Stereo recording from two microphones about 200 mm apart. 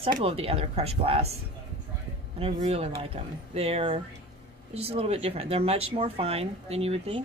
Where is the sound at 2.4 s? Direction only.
30° right (ahead or behind).